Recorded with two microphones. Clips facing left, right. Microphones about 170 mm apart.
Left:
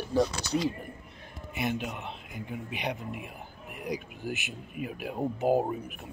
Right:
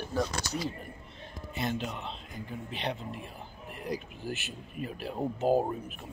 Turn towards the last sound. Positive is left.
turn(degrees=10)  # may be behind; listen again after turning